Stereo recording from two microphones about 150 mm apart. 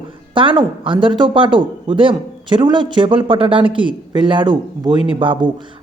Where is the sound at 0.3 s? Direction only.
35° right (ahead or behind).